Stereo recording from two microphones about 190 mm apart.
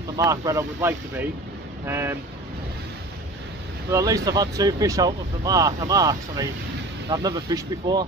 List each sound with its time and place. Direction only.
0.2 s speech: 15° right (ahead or behind)
3.9 s speech: 20° right (ahead or behind)